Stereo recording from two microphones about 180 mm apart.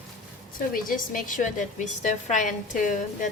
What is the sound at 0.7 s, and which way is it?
A woman's voice, 50° left (ahead or behind).